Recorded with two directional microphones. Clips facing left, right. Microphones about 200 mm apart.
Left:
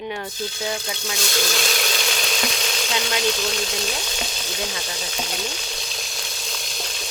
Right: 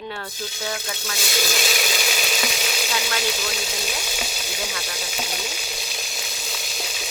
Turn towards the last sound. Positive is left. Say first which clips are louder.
# even
turn(degrees=-5)  # may be behind; listen again after turning